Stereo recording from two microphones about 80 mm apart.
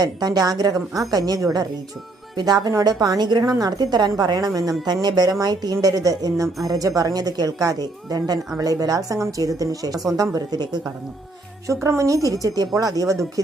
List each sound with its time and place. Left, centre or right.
0.0 s a woman's voice: right
2.3 s a woman's voice: right
2.6 s a woman's voice: right
3.2 s a woman's voice: right
10.6 s a woman's voice: right
11.7 s a woman's voice: right